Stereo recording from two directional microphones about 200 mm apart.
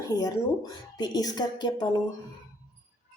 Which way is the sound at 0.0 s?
20° left (ahead or behind).